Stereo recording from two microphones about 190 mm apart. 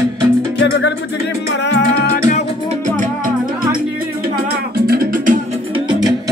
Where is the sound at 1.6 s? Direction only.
70° left (ahead or behind).